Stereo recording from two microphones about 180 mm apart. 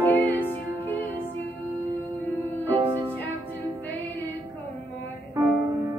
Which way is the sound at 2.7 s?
30° right (ahead or behind).